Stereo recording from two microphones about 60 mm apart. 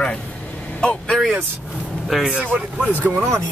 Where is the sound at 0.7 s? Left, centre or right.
Centre.